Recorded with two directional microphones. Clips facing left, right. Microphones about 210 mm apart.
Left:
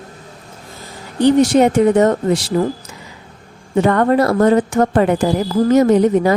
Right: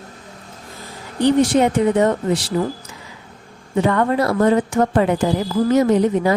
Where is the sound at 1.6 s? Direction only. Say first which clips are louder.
Left 4 dB; 45° left (ahead or behind).